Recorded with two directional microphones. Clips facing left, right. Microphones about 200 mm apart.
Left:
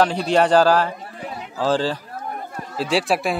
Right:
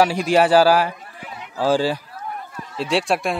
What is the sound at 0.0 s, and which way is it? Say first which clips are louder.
Speech: right 1 dB; 10° right (ahead or behind).